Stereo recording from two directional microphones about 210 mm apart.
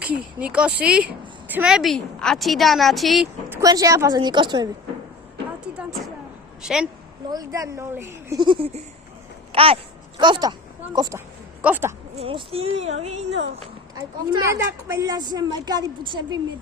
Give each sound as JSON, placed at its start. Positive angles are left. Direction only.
{"t": 0.0, "sound": "a woman's voice", "side_deg": -5}
{"t": 3.5, "sound": "a woman's voice", "side_deg": -15}
{"t": 5.7, "sound": "vehicle", "side_deg": -5}
{"t": 6.6, "sound": "a sound", "side_deg": -5}
{"t": 7.3, "sound": "a woman's voice", "side_deg": -15}
{"t": 8.4, "sound": "speech", "side_deg": -25}
{"t": 9.5, "sound": "a sound", "side_deg": -25}
{"t": 10.2, "sound": "a woman's voice", "side_deg": -20}
{"t": 12.1, "sound": "speech", "side_deg": -30}
{"t": 14.3, "sound": "a woman's voice", "side_deg": -15}